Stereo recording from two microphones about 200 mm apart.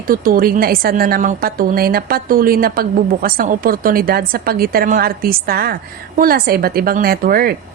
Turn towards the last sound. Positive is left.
turn(degrees=-50)  # may be behind; listen again after turning